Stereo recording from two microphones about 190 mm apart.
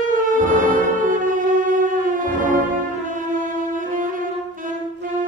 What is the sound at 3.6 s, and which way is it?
Music, 45° right (ahead or behind).